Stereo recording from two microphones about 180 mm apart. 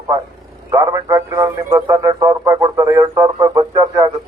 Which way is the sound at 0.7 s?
20° right (ahead or behind).